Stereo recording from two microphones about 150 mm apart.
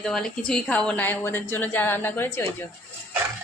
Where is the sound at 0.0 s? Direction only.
5° left (ahead or behind).